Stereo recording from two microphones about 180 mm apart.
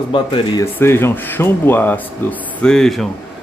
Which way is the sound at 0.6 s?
15° left (ahead or behind).